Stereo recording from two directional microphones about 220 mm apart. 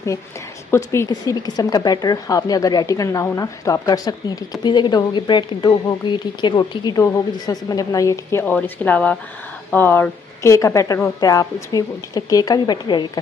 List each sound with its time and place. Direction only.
0.7 s a woman's voice: 15° left (ahead or behind)